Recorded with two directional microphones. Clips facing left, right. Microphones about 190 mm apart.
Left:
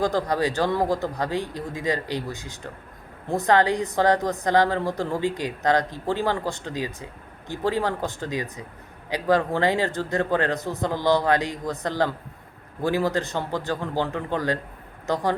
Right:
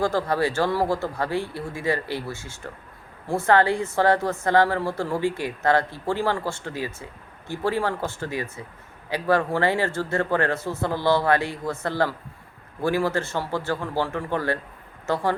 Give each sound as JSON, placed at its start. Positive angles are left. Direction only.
{"t": 0.0, "sound": "a woman's voice", "side_deg": 15}